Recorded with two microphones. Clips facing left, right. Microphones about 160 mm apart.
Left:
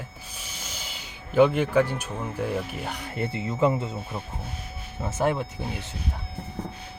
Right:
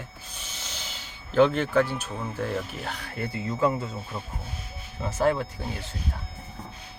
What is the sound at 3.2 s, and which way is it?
Speech, 25° left (ahead or behind).